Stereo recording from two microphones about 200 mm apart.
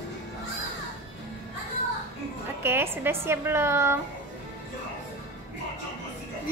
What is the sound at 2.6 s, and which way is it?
A woman's voice, 10° right (ahead or behind).